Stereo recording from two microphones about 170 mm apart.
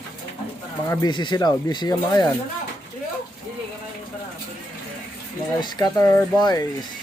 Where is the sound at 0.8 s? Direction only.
20° left (ahead or behind).